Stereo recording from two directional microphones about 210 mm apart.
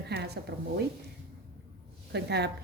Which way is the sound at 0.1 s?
50° right (ahead or behind).